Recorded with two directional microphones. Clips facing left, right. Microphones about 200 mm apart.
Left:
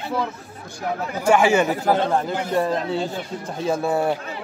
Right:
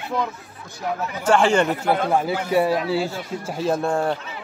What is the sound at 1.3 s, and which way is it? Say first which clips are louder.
Speech: left 1 dB; 10° left (ahead or behind).